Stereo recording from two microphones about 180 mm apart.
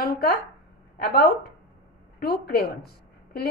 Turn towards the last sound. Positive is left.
turn(degrees=60)  # may be behind; listen again after turning